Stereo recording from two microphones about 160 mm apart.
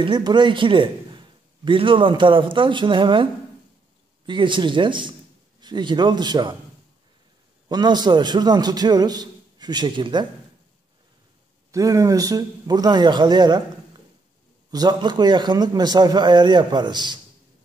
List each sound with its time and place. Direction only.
0.0 s a man's voice: 30° right (ahead or behind)
4.3 s a man's voice: 30° right (ahead or behind)
7.6 s a man's voice: 25° right (ahead or behind)
11.7 s a man's voice: 20° right (ahead or behind)
14.7 s a man's voice: 25° right (ahead or behind)